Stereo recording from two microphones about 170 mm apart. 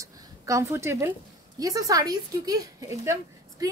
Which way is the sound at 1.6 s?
20° right (ahead or behind).